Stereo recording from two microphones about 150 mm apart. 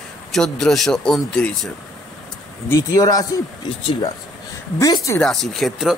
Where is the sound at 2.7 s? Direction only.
20° left (ahead or behind).